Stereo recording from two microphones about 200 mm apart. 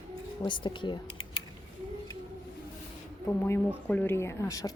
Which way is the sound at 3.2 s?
10° left (ahead or behind).